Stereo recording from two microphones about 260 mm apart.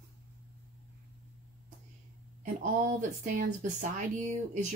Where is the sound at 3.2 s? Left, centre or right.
Right.